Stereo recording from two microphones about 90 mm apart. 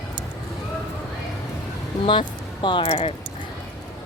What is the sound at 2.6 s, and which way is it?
Speech, 75° left (ahead or behind).